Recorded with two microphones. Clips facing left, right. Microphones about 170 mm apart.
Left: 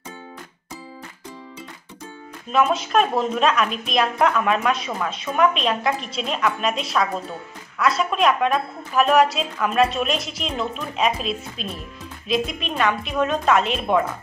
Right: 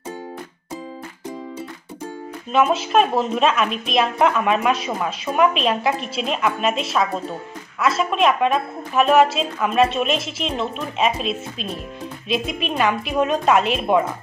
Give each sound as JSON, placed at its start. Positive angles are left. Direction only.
{"t": 2.5, "sound": "a woman's voice", "side_deg": -5}